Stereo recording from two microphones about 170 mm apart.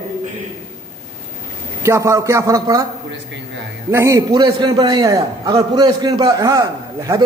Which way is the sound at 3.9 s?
15° right (ahead or behind).